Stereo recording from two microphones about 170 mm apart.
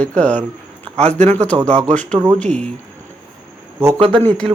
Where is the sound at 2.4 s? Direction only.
5° left (ahead or behind).